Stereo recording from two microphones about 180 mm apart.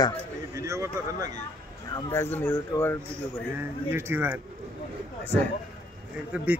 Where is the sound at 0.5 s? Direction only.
15° right (ahead or behind).